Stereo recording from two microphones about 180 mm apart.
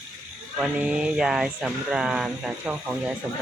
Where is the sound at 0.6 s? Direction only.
5° right (ahead or behind).